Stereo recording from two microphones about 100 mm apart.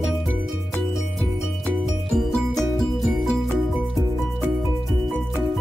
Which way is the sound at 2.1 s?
Centre (ahead or behind).